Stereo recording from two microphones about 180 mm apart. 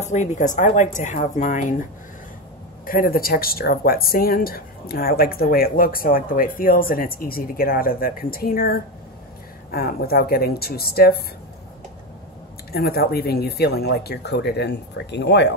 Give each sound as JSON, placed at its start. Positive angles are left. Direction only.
{"t": 0.0, "sound": "speech", "side_deg": 40}
{"t": 2.9, "sound": "speech", "side_deg": 55}
{"t": 12.7, "sound": "speech", "side_deg": 60}